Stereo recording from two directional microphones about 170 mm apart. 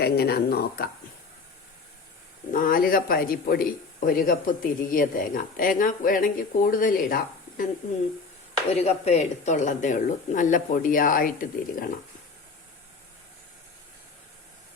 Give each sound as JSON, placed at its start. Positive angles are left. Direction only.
{"t": 0.0, "sound": "speech", "side_deg": 70}
{"t": 2.5, "sound": "a man's voice", "side_deg": 55}
{"t": 8.7, "sound": "speech", "side_deg": 40}